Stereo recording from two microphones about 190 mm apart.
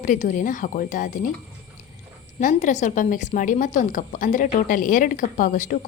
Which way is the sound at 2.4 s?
40° left (ahead or behind).